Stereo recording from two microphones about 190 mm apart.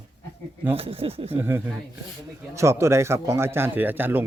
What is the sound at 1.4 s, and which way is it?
Speech, 15° right (ahead or behind).